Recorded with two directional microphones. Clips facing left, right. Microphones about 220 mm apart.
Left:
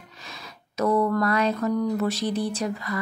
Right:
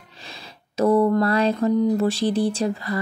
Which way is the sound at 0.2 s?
30° right (ahead or behind).